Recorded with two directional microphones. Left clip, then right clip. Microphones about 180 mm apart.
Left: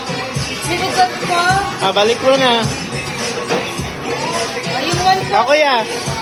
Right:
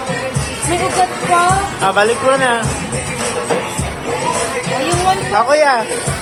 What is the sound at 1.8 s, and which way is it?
Speech, 25° left (ahead or behind).